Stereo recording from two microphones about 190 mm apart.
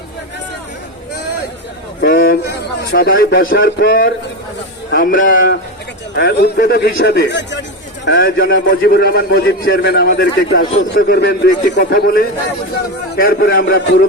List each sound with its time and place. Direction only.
2.0 s a sound: 55° left (ahead or behind)
2.9 s a man's voice: 50° left (ahead or behind)
6.1 s a man's voice: 55° left (ahead or behind)